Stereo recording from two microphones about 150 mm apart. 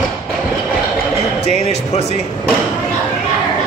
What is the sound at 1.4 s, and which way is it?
Music, 45° left (ahead or behind).